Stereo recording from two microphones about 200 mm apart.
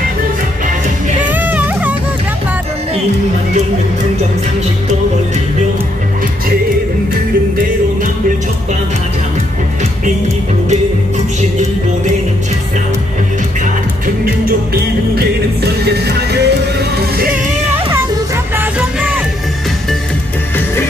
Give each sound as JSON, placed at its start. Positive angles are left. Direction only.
{"t": 1.3, "sound": "music", "side_deg": -10}
{"t": 14.0, "sound": "music", "side_deg": -50}
{"t": 18.6, "sound": "music", "side_deg": -10}